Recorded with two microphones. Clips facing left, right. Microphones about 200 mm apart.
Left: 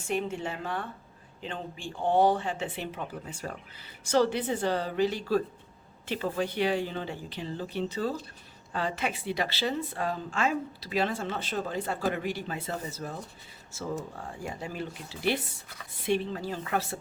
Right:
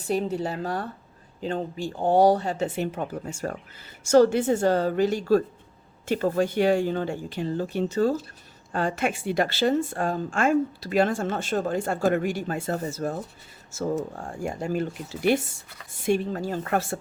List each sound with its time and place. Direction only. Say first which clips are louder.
0.0 s a woman's voice: right 5 dB; 35° right (ahead or behind)